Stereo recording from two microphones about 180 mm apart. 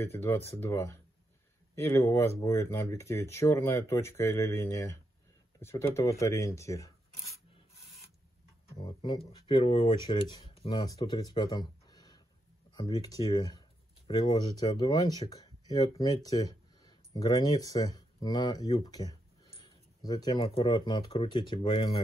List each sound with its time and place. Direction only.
0.0 s speech: 15° left (ahead or behind)
8.7 s speech: 25° left (ahead or behind)